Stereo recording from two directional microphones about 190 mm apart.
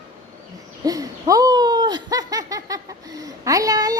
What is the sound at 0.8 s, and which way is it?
A woman's voice, 20° right (ahead or behind).